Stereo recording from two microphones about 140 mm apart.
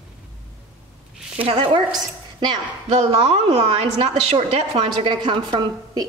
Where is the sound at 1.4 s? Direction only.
40° right (ahead or behind).